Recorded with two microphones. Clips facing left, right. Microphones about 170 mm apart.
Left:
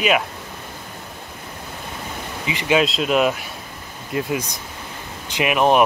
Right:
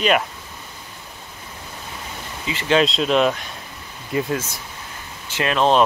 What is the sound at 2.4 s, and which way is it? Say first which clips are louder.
Speech: even; 15° left (ahead or behind).